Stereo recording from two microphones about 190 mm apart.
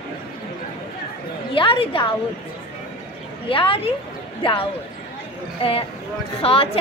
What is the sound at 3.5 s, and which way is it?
Speech, 30° left (ahead or behind).